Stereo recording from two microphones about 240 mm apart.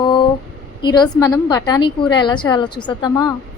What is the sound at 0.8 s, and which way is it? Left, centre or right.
A woman's voice, centre.